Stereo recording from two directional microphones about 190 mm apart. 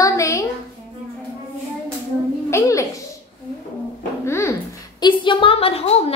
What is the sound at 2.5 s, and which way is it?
Music, 15° left (ahead or behind).